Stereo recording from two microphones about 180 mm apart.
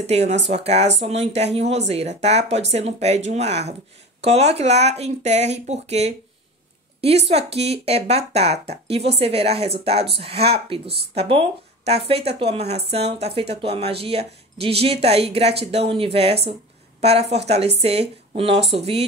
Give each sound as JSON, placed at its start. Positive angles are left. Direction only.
{"t": 0.0, "sound": "speech", "side_deg": -35}